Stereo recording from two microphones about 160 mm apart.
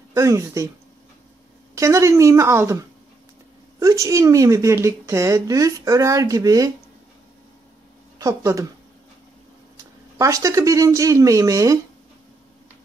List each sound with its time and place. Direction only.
0.1 s a woman's voice: 20° right (ahead or behind)
1.8 s a woman's voice: 20° right (ahead or behind)
3.8 s a woman's voice: 20° right (ahead or behind)
8.2 s a woman's voice: 20° right (ahead or behind)
10.1 s a woman's voice: 20° right (ahead or behind)